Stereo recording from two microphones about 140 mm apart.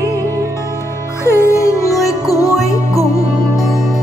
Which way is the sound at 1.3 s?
20° left (ahead or behind).